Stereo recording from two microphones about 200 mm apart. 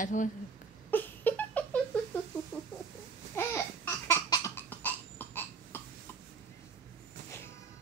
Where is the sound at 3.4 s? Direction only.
15° left (ahead or behind).